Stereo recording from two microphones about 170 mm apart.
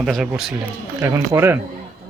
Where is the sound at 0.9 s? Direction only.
15° right (ahead or behind).